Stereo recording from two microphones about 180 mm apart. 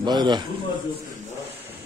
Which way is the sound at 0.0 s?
25° right (ahead or behind).